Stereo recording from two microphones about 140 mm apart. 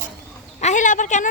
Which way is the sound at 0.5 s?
60° left (ahead or behind).